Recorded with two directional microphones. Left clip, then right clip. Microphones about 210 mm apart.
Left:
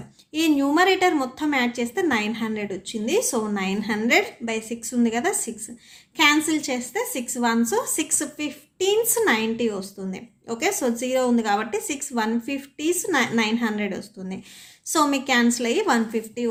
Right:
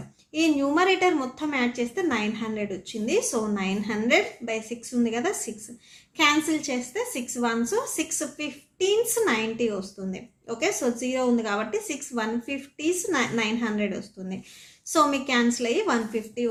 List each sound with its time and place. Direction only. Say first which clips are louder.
0.3 s a woman's voice: left 3 dB; 25° left (ahead or behind)